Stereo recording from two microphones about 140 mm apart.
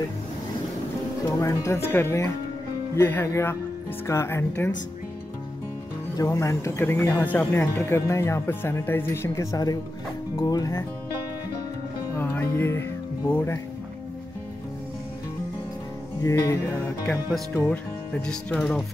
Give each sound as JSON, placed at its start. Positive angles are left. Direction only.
{"t": 1.2, "sound": "speech", "side_deg": 20}
{"t": 6.1, "sound": "speech", "side_deg": 20}
{"t": 12.2, "sound": "music", "side_deg": 15}
{"t": 16.2, "sound": "speech", "side_deg": 20}
{"t": 17.1, "sound": "speech", "side_deg": 5}